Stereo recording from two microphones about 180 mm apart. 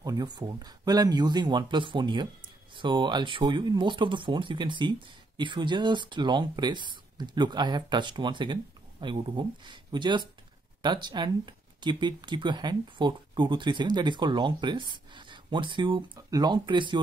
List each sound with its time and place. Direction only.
0.0 s speech: 20° right (ahead or behind)